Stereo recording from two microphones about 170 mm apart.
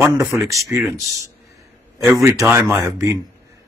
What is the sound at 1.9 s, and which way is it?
A man's voice, 15° right (ahead or behind).